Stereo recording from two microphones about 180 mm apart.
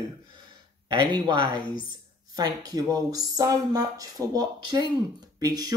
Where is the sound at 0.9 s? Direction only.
25° right (ahead or behind).